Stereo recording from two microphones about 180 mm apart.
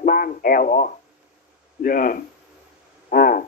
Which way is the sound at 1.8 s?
50° left (ahead or behind).